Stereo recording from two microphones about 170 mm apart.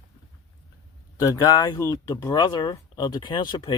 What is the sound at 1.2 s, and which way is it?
Speech, 20° left (ahead or behind).